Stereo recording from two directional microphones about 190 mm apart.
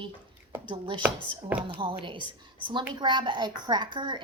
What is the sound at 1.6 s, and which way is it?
A child's voice, 25° right (ahead or behind).